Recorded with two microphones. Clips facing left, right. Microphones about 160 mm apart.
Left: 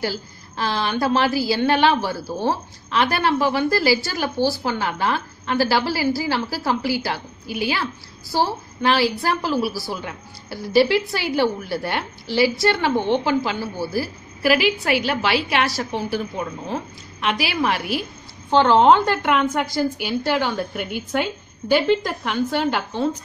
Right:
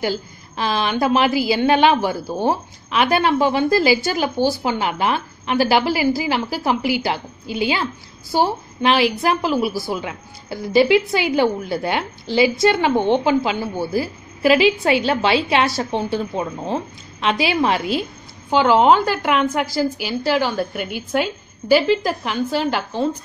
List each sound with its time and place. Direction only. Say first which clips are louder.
0.0 s a woman's voice: right 3 dB; 20° right (ahead or behind)
18.5 s a woman's voice: even; 5° right (ahead or behind)